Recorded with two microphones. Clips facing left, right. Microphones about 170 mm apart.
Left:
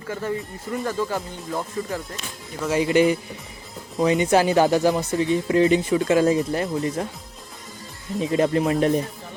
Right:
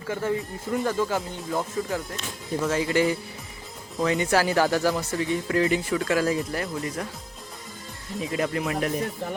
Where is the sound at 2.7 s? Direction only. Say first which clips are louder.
Left 7 dB; 20° left (ahead or behind).